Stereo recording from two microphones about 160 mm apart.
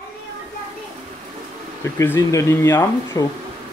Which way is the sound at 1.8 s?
20° left (ahead or behind).